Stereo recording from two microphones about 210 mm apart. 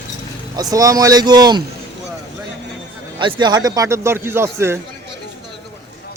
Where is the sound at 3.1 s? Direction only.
25° right (ahead or behind).